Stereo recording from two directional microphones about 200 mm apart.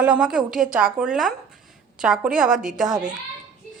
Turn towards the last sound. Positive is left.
turn(degrees=0)  # may be behind; listen again after turning